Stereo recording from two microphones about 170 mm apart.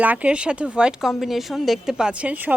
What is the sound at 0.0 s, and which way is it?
A woman's voice, 10° right (ahead or behind).